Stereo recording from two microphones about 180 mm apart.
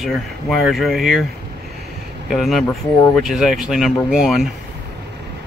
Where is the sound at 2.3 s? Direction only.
Centre (ahead or behind).